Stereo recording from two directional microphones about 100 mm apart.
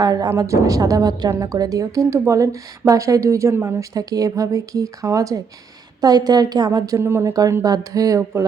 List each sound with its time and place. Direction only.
0.0 s a woman's voice: 40° right (ahead or behind)
7.6 s a woman's voice: 35° right (ahead or behind)